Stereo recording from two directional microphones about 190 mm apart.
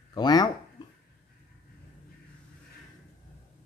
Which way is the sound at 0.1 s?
20° left (ahead or behind).